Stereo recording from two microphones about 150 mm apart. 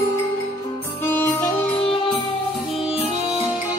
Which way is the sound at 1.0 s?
15° left (ahead or behind).